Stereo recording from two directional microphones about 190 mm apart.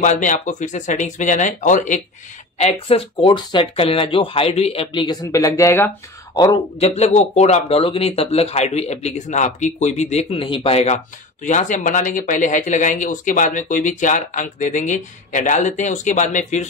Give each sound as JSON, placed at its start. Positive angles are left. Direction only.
{"t": 0.0, "sound": "speech", "side_deg": 40}
{"t": 2.6, "sound": "speech", "side_deg": 30}